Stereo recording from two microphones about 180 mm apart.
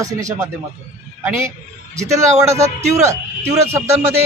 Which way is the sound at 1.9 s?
15° right (ahead or behind).